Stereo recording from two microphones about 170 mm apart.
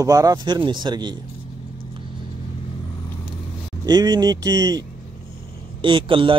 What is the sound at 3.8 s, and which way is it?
A man's voice, 25° right (ahead or behind).